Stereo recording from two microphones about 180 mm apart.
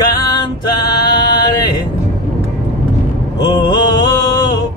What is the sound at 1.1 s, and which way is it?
Mantra, 25° left (ahead or behind).